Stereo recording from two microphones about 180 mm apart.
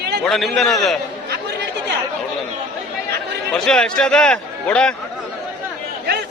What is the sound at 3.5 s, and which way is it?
A man's voice, 5° left (ahead or behind).